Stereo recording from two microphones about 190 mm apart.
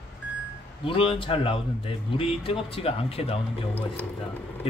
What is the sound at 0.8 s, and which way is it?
Speech, 30° left (ahead or behind).